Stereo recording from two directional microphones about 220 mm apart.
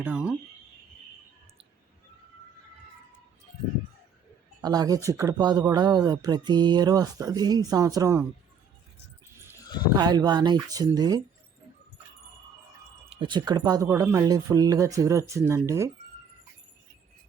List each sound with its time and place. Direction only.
0.0 s speech: 5° right (ahead or behind)
4.6 s speech: 15° right (ahead or behind)
9.9 s speech: 20° right (ahead or behind)
13.1 s speech: 20° right (ahead or behind)